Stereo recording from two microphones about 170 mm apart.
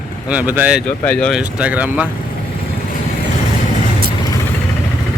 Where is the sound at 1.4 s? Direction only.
5° right (ahead or behind).